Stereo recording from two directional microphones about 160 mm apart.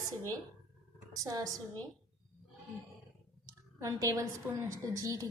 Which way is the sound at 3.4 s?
20° right (ahead or behind).